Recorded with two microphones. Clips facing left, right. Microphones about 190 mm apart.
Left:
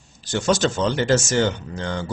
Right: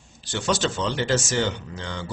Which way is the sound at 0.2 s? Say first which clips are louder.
Left 5 dB; 45° left (ahead or behind).